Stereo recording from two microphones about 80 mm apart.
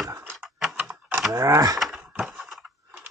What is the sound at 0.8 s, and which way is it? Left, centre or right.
Typewriter, right.